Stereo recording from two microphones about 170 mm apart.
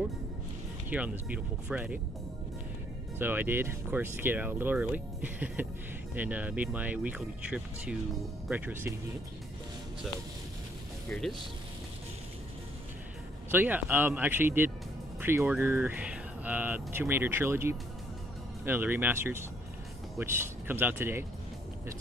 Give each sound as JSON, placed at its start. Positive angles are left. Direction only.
{"t": 0.8, "sound": "speech", "side_deg": -10}
{"t": 3.2, "sound": "speech", "side_deg": -10}
{"t": 11.1, "sound": "speech", "side_deg": 0}
{"t": 13.5, "sound": "speech", "side_deg": -10}